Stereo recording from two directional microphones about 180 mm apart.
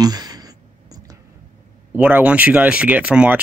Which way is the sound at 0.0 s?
20° right (ahead or behind).